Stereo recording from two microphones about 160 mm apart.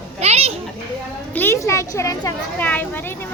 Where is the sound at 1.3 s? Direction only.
15° left (ahead or behind).